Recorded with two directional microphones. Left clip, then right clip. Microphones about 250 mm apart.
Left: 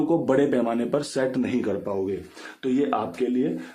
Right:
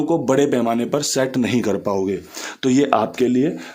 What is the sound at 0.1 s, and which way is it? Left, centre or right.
Speech, right.